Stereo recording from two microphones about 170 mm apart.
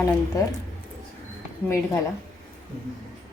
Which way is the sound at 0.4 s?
20° left (ahead or behind).